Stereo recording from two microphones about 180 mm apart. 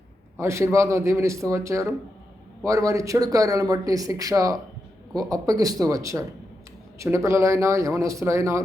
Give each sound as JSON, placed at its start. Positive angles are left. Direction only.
{"t": 0.3, "sound": "a man's voice", "side_deg": -15}